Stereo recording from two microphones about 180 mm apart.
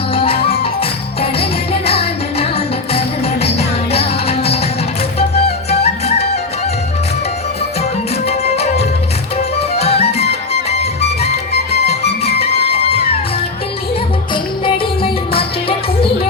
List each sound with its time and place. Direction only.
0.1 s music: 30° left (ahead or behind)
8.3 s music: 35° left (ahead or behind)